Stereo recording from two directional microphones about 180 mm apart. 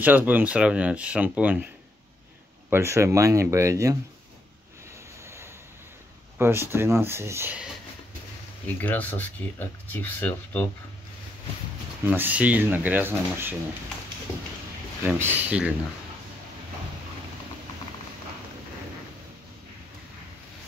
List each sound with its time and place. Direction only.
0.0 s speech: 10° right (ahead or behind)
2.7 s speech: 15° right (ahead or behind)
5.2 s vehicle: 15° right (ahead or behind)
6.3 s speech: 15° right (ahead or behind)
8.8 s speech: 10° left (ahead or behind)
12.1 s speech: 10° right (ahead or behind)
15.0 s speech: 10° right (ahead or behind)